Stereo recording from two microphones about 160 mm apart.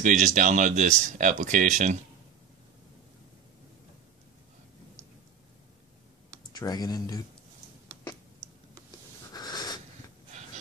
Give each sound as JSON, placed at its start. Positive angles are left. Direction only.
{"t": 0.0, "sound": "speech", "side_deg": -50}
{"t": 6.5, "sound": "speech", "side_deg": 25}
{"t": 9.3, "sound": "wheeze", "side_deg": 25}